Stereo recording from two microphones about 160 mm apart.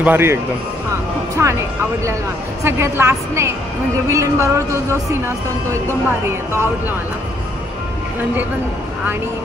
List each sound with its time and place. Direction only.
0.0 s speech: 15° right (ahead or behind)
5.7 s speech: 15° right (ahead or behind)